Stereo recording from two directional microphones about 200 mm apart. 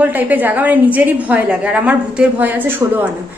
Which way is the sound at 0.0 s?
10° right (ahead or behind).